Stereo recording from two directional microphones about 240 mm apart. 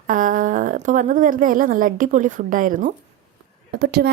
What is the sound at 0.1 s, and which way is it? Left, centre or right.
A woman's voice, right.